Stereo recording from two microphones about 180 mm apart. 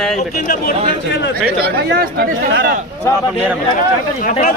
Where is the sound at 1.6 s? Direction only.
60° right (ahead or behind).